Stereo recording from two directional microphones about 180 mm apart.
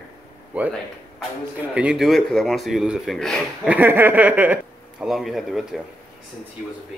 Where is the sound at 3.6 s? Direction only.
10° right (ahead or behind).